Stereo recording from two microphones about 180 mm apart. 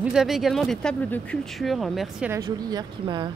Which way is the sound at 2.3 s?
20° right (ahead or behind).